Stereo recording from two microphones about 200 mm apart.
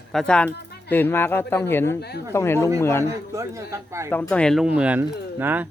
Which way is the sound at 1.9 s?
55° left (ahead or behind).